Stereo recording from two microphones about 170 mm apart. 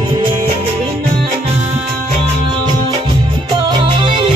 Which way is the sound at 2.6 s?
25° right (ahead or behind).